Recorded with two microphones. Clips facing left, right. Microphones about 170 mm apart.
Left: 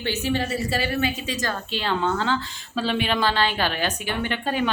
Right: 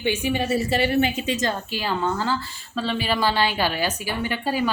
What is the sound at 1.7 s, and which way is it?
A woman's voice, 5° right (ahead or behind).